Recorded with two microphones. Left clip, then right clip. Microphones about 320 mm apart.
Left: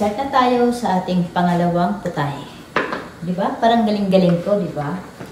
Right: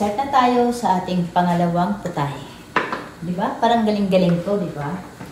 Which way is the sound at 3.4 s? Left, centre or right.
Centre.